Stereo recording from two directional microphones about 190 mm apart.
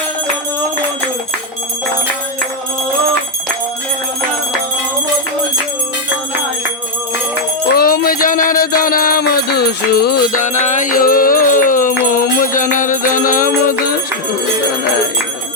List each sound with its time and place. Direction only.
7.8 s music: 50° left (ahead or behind)